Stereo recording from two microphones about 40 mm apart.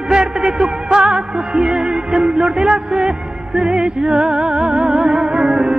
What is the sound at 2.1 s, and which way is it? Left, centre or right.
Music, right.